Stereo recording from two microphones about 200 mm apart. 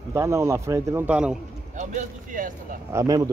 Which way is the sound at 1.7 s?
40° right (ahead or behind).